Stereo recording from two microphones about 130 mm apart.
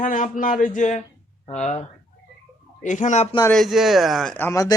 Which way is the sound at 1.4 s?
60° left (ahead or behind).